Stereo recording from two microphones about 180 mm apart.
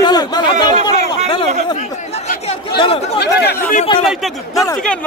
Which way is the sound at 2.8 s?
35° left (ahead or behind).